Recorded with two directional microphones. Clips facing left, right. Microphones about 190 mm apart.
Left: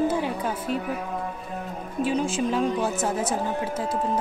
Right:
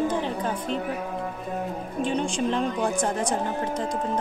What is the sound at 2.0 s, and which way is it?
Speech, 5° left (ahead or behind).